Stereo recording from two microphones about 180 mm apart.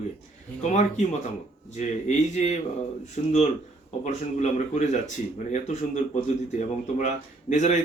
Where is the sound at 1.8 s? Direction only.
40° left (ahead or behind).